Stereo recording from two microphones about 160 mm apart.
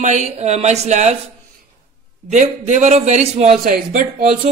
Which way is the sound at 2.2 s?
50° right (ahead or behind).